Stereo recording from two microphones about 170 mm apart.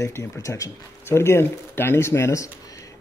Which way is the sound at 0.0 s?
20° left (ahead or behind).